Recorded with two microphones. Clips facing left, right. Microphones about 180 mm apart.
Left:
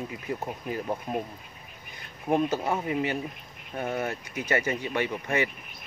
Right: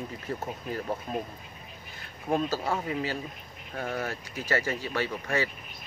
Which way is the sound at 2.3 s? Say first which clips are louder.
Left 3 dB; 20° left (ahead or behind).